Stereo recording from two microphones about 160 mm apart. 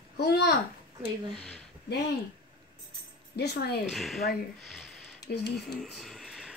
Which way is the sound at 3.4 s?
90° left.